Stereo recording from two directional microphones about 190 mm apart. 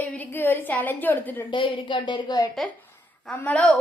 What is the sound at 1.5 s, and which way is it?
A woman's voice, 25° left (ahead or behind).